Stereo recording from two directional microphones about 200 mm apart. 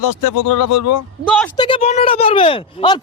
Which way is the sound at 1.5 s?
25° left (ahead or behind).